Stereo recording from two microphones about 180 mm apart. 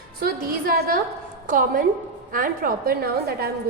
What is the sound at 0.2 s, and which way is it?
A woman's voice, 55° right (ahead or behind).